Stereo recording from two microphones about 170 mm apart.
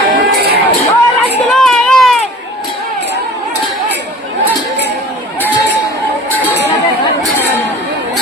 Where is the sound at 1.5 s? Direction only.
Centre (ahead or behind).